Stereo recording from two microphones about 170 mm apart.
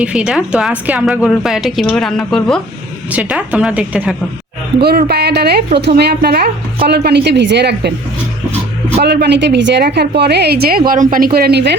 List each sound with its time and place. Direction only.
0.0 s a woman's voice: 5° right (ahead or behind)
4.8 s a woman's voice: 70° right (ahead or behind)
9.0 s a woman's voice: 75° right (ahead or behind); by 11.3 s 50° right (ahead or behind)
11.3 s a woman's voice: 70° right (ahead or behind)